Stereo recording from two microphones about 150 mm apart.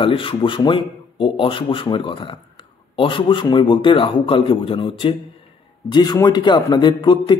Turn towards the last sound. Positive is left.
turn(degrees=30)  # may be behind; listen again after turning